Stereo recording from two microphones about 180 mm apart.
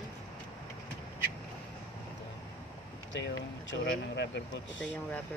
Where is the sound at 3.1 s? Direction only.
80° left.